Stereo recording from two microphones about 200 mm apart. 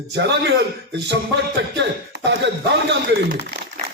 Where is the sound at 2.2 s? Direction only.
60° right (ahead or behind).